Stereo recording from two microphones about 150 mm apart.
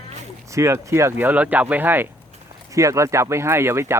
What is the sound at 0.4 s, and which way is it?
Speech, 20° right (ahead or behind).